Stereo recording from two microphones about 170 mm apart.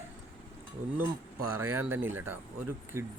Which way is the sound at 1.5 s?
15° right (ahead or behind).